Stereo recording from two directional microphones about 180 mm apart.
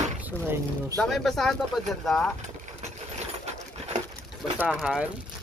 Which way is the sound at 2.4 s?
40° right (ahead or behind).